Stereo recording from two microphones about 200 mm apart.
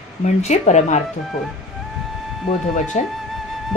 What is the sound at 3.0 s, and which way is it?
Speech, 35° left (ahead or behind).